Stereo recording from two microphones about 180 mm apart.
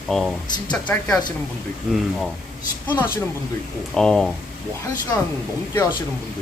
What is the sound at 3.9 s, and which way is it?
Speech, 5° left (ahead or behind).